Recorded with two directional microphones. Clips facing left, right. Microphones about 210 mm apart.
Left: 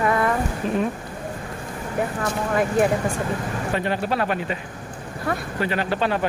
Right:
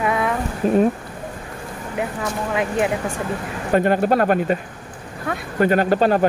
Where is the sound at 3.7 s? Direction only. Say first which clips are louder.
Right 9 dB; 50° right (ahead or behind).